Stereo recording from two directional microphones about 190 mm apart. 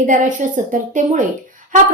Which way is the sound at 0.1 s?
40° right (ahead or behind).